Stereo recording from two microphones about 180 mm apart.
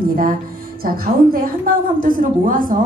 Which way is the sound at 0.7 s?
55° right (ahead or behind).